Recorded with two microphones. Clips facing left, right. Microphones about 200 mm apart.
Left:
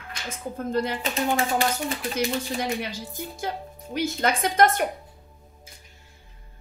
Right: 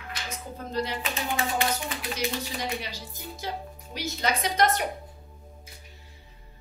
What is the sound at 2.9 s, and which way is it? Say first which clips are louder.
A woman's voice: left 5 dB; 50° left (ahead or behind).